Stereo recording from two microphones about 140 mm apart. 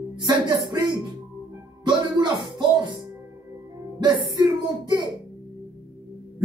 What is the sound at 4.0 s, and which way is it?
Speech, 30° right (ahead or behind).